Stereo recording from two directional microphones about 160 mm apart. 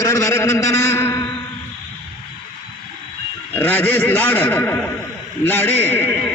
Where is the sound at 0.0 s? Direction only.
20° left (ahead or behind).